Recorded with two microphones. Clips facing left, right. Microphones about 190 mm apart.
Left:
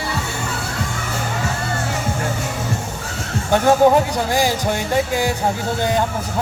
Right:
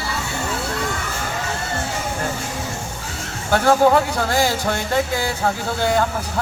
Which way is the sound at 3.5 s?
15° left (ahead or behind).